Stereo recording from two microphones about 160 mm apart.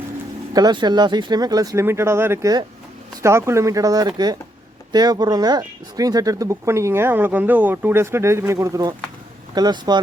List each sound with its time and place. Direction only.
0.5 s speech: 25° right (ahead or behind)